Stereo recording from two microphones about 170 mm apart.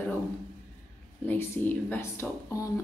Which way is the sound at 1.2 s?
10° left (ahead or behind).